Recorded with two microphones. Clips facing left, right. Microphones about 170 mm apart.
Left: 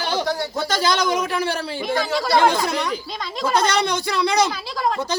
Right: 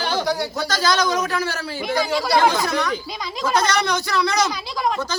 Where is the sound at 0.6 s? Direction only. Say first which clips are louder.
Left 1 dB; 25° left (ahead or behind).